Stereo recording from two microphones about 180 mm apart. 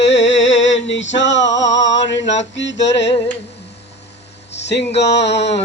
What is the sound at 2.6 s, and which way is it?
Mantra, 80° left.